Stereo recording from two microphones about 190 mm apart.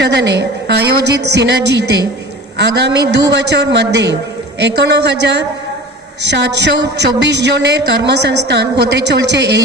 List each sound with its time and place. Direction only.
0.0 s a woman's voice: 65° right (ahead or behind)